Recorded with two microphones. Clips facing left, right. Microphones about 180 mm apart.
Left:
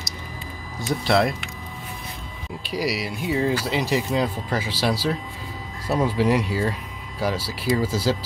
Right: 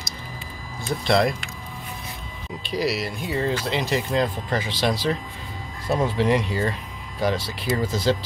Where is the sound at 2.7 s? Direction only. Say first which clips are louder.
Right 1 dB; 10° left (ahead or behind).